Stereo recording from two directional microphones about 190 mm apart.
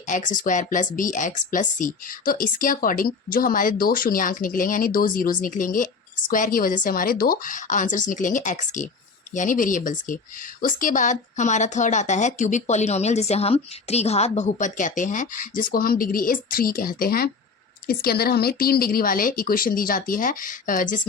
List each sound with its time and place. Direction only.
0.1 s speech: 45° left (ahead or behind)